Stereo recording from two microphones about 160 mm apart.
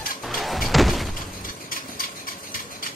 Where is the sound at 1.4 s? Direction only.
60° left (ahead or behind).